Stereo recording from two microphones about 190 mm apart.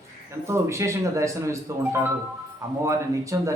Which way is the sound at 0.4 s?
15° right (ahead or behind).